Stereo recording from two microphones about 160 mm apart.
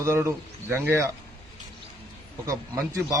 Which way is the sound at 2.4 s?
20° right (ahead or behind).